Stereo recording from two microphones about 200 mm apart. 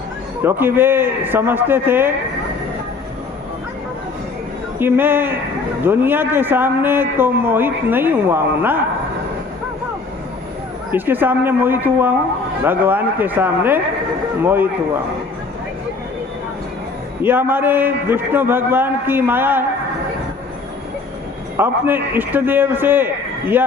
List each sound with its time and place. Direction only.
0.4 s a man's voice: 10° right (ahead or behind)
4.8 s a man's voice: 10° right (ahead or behind)
10.9 s a man's voice: 10° right (ahead or behind)
17.2 s a man's voice: 10° right (ahead or behind)
21.6 s a man's voice: 10° right (ahead or behind)